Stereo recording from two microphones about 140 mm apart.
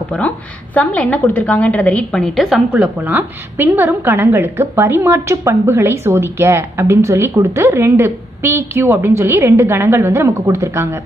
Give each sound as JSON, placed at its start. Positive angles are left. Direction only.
{"t": 0.7, "sound": "a woman's voice", "side_deg": 10}
{"t": 2.7, "sound": "a woman's voice", "side_deg": -10}